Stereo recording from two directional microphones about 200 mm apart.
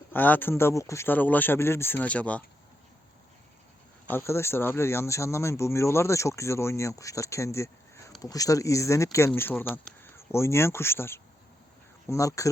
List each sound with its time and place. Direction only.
0.1 s speech: 10° left (ahead or behind)
4.1 s speech: 15° left (ahead or behind)